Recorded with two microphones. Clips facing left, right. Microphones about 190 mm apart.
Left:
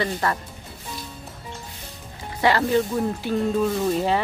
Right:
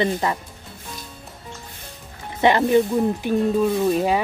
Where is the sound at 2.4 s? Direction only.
20° right (ahead or behind).